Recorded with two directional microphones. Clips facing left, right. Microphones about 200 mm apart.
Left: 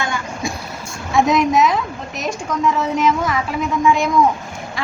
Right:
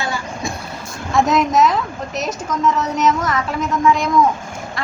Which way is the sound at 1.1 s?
Centre (ahead or behind).